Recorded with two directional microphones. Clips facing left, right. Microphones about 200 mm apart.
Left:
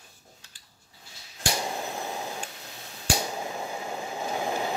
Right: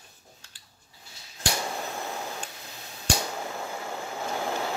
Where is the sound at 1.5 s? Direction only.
15° left (ahead or behind).